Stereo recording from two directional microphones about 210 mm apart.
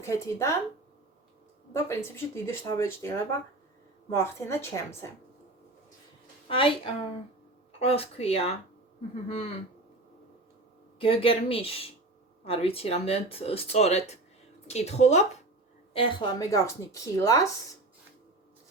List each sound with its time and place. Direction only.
0.0 s speech: 15° left (ahead or behind)
1.7 s speech: 10° left (ahead or behind)
6.5 s speech: 25° left (ahead or behind)
11.0 s speech: 25° left (ahead or behind)